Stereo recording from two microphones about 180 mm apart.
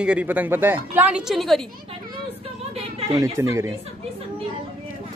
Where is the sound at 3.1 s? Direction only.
15° right (ahead or behind).